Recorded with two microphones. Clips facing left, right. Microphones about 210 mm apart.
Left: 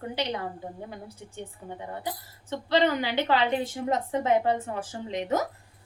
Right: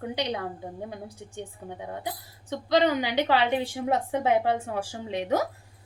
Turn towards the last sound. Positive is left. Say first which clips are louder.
# right 1 dB
turn(degrees=-15)  # may be behind; listen again after turning